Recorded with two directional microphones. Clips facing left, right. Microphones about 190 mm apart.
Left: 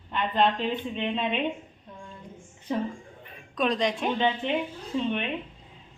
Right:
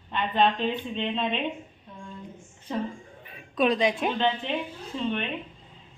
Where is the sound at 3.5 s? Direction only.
5° right (ahead or behind).